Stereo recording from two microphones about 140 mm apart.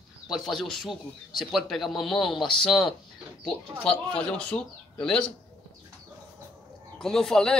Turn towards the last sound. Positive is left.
turn(degrees=5)  # may be behind; listen again after turning